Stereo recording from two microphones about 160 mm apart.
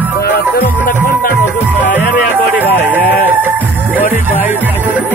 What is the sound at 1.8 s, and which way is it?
Music, 50° left (ahead or behind).